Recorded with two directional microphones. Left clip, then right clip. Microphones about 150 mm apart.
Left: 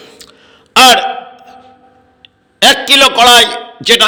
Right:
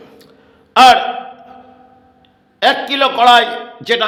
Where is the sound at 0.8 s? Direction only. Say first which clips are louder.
Left 2 dB; 20° left (ahead or behind).